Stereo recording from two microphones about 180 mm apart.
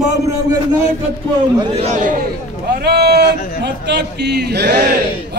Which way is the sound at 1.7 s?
40° right (ahead or behind).